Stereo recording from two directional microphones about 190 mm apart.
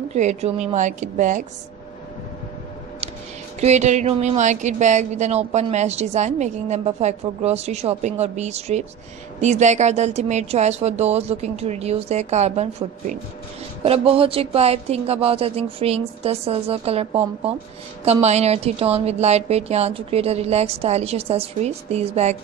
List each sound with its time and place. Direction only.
0.1 s speech: 35° right (ahead or behind)
3.6 s speech: 35° right (ahead or behind)